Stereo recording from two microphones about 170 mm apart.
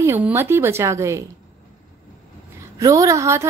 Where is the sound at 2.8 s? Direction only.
20° right (ahead or behind).